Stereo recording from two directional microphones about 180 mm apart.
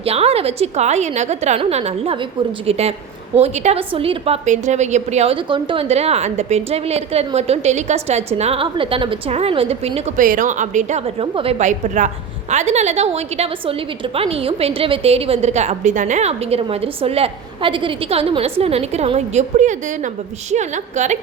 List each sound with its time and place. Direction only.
0.0 s a woman's voice: 35° right (ahead or behind)
10.2 s a woman's voice: 45° right (ahead or behind)